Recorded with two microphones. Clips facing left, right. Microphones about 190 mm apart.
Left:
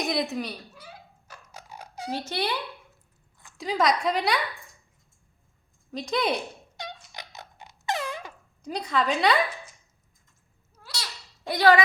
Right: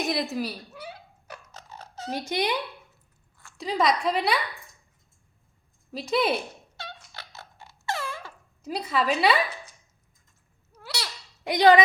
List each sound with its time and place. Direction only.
0.0 s a woman's voice: centre (ahead or behind)
0.8 s a sound: 65° right (ahead or behind)
1.5 s a sound: 10° left (ahead or behind)
2.1 s speech: 15° right (ahead or behind)
3.6 s a woman's voice: centre (ahead or behind)
5.9 s a woman's voice: 5° right (ahead or behind)
6.7 s dog: 15° left (ahead or behind)
8.6 s a woman's voice: 5° right (ahead or behind)
11.4 s a woman's voice: 20° right (ahead or behind)